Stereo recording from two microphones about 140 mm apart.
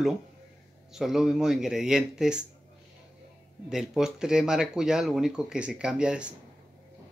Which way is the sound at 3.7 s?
5° right (ahead or behind).